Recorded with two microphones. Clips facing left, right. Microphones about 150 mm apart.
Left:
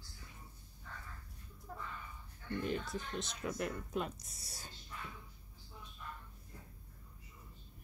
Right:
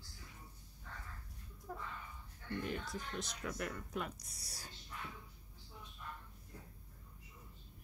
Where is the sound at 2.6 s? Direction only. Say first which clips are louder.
Left 3 dB; 25° left (ahead or behind).